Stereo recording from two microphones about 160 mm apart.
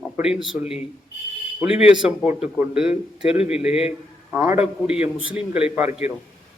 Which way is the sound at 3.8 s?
10° right (ahead or behind).